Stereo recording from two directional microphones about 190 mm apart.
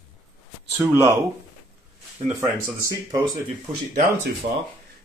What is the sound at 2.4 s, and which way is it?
Speech, 15° right (ahead or behind).